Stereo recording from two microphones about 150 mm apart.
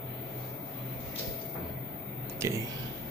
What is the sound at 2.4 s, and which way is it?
Speech, 20° right (ahead or behind).